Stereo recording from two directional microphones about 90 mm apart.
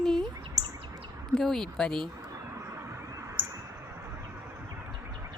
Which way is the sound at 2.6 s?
35° right (ahead or behind).